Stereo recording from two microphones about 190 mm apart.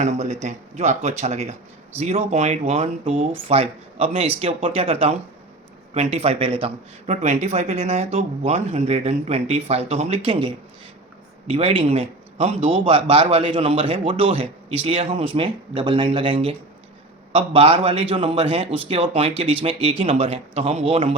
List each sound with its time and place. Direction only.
0.0 s a man's voice: 35° right (ahead or behind)